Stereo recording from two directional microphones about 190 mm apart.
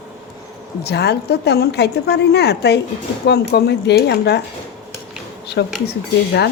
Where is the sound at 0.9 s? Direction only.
60° left (ahead or behind).